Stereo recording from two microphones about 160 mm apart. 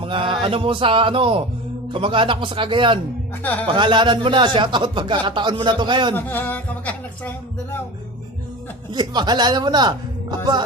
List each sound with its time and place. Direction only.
0.0 s a sound: 35° right (ahead or behind)
0.4 s speech: 35° right (ahead or behind)
3.4 s speech: 10° left (ahead or behind)
3.7 s speech: 30° right (ahead or behind)
6.1 s speech: 10° left (ahead or behind)
8.9 s a man's voice: 25° right (ahead or behind)